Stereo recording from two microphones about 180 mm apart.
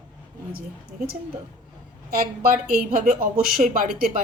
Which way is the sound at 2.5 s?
50° right (ahead or behind).